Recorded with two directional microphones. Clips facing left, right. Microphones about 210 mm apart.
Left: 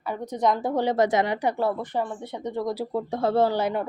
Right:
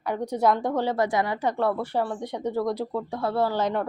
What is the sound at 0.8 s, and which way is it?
Speech, 20° left (ahead or behind).